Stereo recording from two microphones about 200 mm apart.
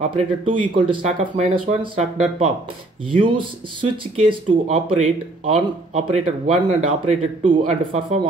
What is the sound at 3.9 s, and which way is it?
Speech, 25° right (ahead or behind).